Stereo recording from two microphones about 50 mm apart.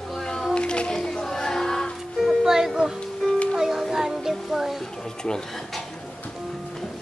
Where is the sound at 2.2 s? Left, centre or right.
Centre.